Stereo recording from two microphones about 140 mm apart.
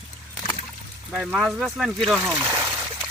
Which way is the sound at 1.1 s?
5° right (ahead or behind).